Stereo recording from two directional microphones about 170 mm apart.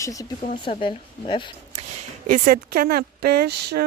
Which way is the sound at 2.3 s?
55° right (ahead or behind).